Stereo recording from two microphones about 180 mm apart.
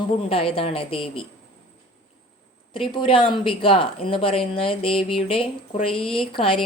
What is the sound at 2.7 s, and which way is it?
A woman's voice, 30° left (ahead or behind).